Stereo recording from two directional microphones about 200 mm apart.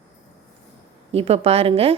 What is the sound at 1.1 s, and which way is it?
Speech, 30° right (ahead or behind).